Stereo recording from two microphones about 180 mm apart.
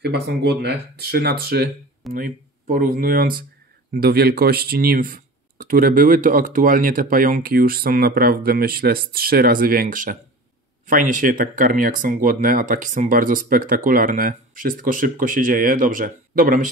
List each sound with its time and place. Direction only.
0.0 s speech: 65° right (ahead or behind); by 16.6 s 50° right (ahead or behind)